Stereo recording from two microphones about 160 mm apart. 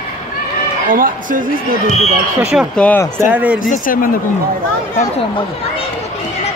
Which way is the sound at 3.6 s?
60° left (ahead or behind).